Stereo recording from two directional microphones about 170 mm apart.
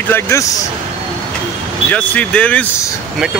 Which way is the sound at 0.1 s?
15° left (ahead or behind).